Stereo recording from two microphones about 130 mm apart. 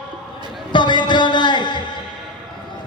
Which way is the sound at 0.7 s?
35° left (ahead or behind).